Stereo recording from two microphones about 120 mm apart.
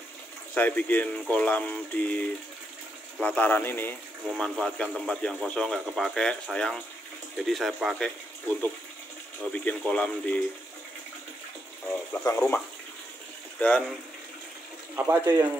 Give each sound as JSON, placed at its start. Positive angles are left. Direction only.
{"t": 0.6, "sound": "speech", "side_deg": 15}
{"t": 4.3, "sound": "speech", "side_deg": 0}
{"t": 9.4, "sound": "speech", "side_deg": 10}
{"t": 11.9, "sound": "a sound", "side_deg": 10}
{"t": 12.4, "sound": "speech", "side_deg": 5}
{"t": 15.0, "sound": "speech", "side_deg": -20}